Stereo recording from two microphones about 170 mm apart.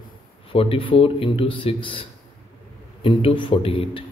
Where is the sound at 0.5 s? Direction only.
35° left (ahead or behind).